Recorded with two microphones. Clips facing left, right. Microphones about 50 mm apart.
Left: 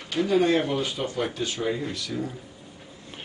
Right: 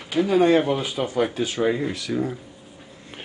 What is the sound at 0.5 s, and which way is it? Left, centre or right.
Speech, centre.